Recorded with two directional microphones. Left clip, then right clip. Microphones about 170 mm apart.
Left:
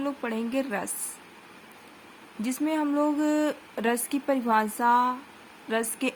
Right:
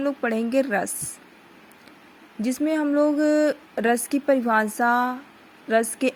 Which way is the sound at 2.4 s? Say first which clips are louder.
Right 4 dB; 25° right (ahead or behind).